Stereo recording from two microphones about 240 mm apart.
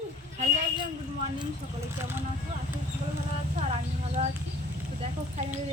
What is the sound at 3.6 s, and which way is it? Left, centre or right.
Speech, right.